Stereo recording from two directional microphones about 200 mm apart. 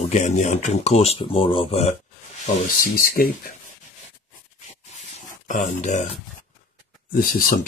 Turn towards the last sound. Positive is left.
turn(degrees=45)  # may be behind; listen again after turning